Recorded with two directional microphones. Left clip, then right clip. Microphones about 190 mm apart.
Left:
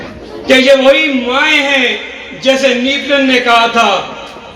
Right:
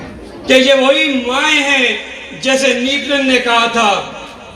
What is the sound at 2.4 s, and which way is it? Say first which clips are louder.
A man's voice: left 3 dB; 20° right (ahead or behind).